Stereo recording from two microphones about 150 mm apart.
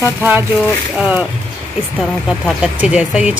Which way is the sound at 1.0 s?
10° right (ahead or behind).